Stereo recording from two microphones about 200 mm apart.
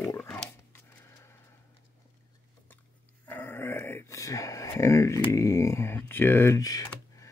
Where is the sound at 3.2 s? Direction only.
10° left (ahead or behind).